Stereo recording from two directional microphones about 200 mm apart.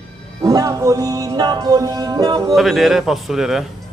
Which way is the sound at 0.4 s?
20° right (ahead or behind).